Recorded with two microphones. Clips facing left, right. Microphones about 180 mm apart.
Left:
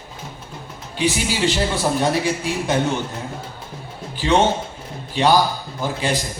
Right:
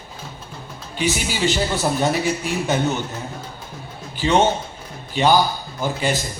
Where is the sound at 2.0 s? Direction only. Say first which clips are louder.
Left 1 dB; centre (ahead or behind).